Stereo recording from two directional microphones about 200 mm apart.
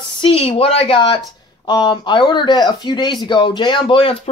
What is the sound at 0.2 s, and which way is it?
Speech, 30° left (ahead or behind).